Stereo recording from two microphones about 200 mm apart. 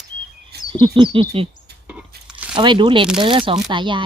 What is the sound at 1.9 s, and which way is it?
Crunch, 5° right (ahead or behind).